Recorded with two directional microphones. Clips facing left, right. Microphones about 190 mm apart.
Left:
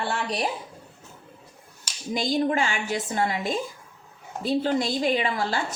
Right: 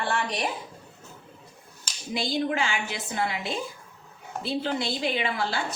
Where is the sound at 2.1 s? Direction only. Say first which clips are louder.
Left 3 dB; 40° left (ahead or behind).